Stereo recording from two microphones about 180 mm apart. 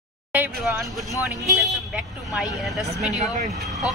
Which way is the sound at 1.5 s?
Centre (ahead or behind).